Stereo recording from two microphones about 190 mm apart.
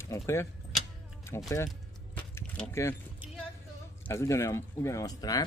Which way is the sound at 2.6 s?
15° left (ahead or behind).